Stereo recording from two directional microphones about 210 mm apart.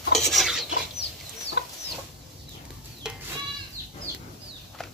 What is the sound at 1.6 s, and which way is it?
Chicken, 50° left (ahead or behind).